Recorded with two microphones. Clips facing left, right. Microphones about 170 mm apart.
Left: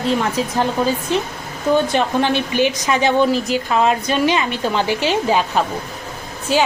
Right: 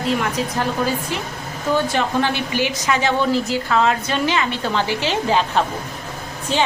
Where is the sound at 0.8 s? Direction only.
25° left (ahead or behind).